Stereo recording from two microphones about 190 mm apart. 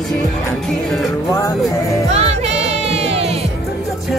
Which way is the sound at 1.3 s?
15° left (ahead or behind).